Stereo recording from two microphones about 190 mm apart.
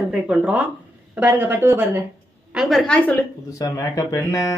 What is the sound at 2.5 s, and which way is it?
Speech, centre (ahead or behind).